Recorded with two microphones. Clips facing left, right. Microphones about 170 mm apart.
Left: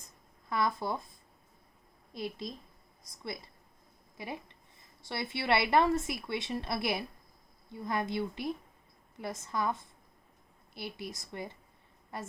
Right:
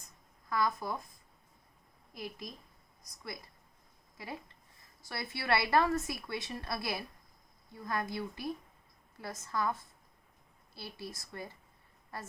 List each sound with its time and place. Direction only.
0.5 s speech: 25° left (ahead or behind)
2.1 s speech: 25° left (ahead or behind)